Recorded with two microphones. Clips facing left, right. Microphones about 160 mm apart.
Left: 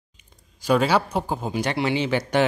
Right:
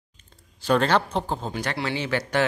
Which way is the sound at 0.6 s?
10° left (ahead or behind).